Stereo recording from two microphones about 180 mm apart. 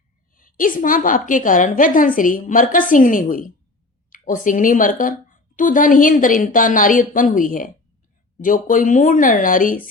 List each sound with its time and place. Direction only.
0.3 s a woman's voice: 50° left (ahead or behind)